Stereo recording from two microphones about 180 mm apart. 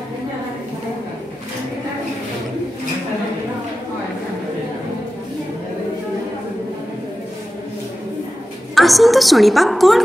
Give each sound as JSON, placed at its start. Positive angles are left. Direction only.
{"t": 8.7, "sound": "a woman's voice", "side_deg": 0}